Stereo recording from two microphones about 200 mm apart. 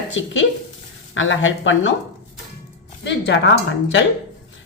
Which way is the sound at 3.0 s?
65° left (ahead or behind).